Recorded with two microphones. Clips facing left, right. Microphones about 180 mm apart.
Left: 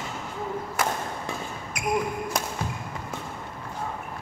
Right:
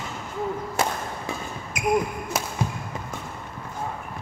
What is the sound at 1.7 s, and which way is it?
Basketball bounce, 20° right (ahead or behind).